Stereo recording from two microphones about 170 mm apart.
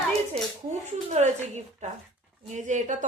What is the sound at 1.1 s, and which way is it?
Speech, 40° right (ahead or behind).